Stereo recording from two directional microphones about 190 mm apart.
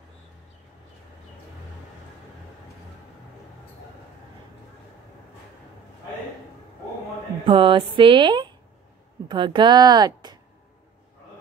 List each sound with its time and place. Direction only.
7.4 s speech: 25° right (ahead or behind)